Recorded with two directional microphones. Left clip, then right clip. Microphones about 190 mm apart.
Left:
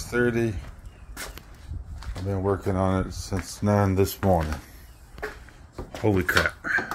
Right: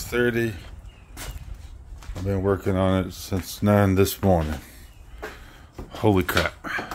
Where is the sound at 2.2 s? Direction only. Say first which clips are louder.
Right 3 dB; 30° right (ahead or behind).